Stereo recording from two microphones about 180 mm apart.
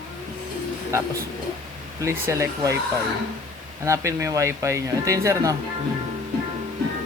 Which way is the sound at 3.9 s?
15° right (ahead or behind).